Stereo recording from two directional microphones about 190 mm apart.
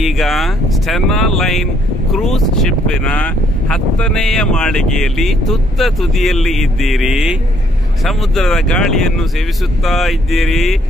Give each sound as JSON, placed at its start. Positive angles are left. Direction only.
{"t": 0.0, "sound": "speech", "side_deg": 0}